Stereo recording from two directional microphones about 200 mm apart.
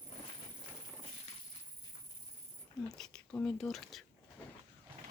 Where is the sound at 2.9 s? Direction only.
5° left (ahead or behind).